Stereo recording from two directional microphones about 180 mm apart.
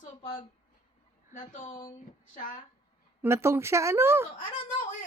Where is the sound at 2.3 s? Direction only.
45° left (ahead or behind).